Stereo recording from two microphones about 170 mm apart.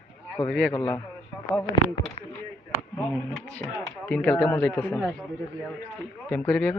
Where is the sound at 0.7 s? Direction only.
15° left (ahead or behind).